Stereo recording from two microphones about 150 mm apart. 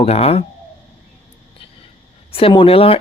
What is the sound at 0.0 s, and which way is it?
Speech, 40° left (ahead or behind).